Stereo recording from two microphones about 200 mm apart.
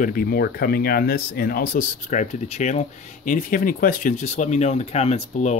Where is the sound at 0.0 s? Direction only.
45° left (ahead or behind).